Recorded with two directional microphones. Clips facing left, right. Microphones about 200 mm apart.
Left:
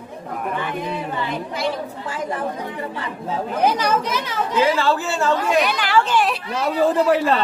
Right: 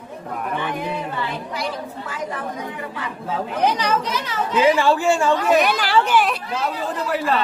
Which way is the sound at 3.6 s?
10° left (ahead or behind).